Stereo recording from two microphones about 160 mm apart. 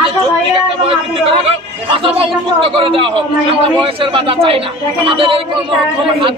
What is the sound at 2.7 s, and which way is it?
A man's voice, 35° right (ahead or behind).